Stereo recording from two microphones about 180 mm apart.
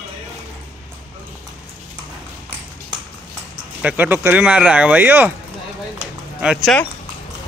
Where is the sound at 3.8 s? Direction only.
10° right (ahead or behind).